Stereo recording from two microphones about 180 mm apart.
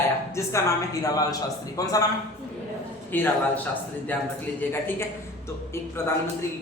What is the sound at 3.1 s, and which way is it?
Speech, 10° left (ahead or behind).